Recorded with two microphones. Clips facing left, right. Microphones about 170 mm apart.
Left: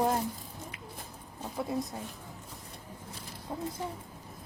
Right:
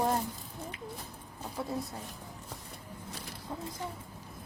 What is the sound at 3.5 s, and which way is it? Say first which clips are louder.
Speech: left 3 dB; 20° left (ahead or behind).